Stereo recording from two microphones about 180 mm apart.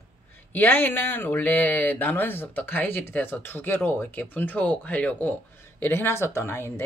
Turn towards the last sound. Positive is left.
turn(degrees=15)  # may be behind; listen again after turning